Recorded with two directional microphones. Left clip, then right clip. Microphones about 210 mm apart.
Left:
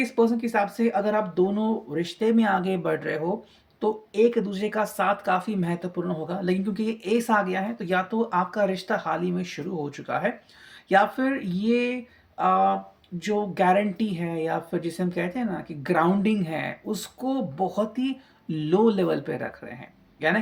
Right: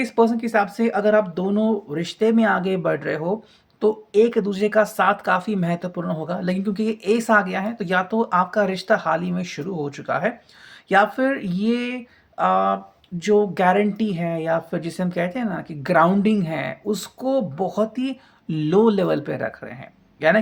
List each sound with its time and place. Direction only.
0.0 s speech: 35° right (ahead or behind)